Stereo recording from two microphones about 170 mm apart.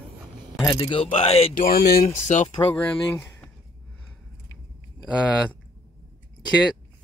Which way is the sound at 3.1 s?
10° left (ahead or behind).